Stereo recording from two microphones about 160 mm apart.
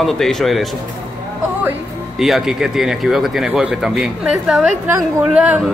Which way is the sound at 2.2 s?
Centre (ahead or behind).